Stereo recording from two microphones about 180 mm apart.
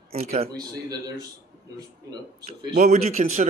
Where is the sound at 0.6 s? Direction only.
20° right (ahead or behind).